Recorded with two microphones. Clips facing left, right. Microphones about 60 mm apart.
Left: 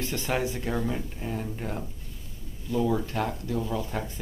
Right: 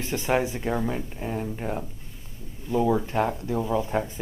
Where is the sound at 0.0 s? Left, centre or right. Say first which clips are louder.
Right 4 dB; centre.